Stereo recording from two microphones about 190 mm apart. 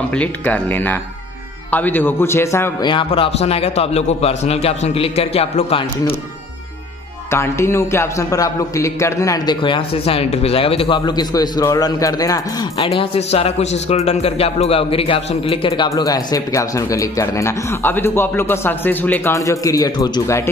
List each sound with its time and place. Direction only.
0.1 s a man's voice: 5° left (ahead or behind); by 6.1 s 30° left (ahead or behind)
7.2 s a man's voice: 15° left (ahead or behind)